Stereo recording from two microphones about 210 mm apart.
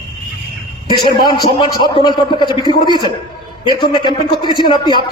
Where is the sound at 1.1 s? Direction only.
20° left (ahead or behind).